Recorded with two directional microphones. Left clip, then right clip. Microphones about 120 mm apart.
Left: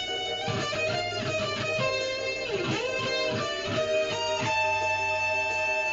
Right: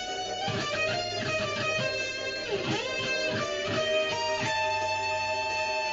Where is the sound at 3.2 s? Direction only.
10° right (ahead or behind).